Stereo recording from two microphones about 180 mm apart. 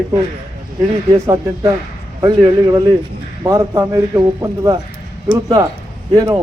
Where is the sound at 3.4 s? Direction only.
20° right (ahead or behind).